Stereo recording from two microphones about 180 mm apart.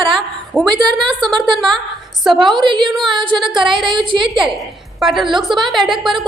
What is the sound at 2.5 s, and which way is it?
Speech, 25° right (ahead or behind).